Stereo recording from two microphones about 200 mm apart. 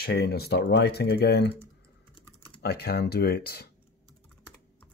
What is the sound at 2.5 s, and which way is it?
Speech, 50° left (ahead or behind).